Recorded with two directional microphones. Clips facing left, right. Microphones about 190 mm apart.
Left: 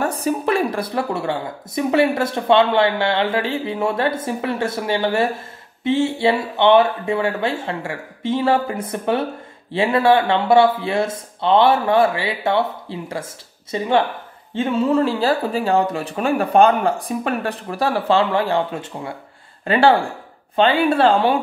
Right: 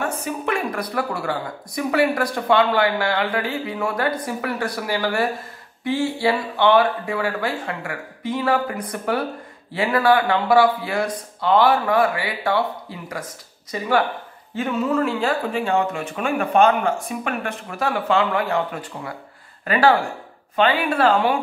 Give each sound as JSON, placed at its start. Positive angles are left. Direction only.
{"t": 0.0, "sound": "speech", "side_deg": 35}